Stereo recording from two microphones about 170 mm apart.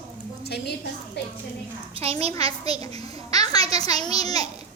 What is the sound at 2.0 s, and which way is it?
Speech, 35° right (ahead or behind).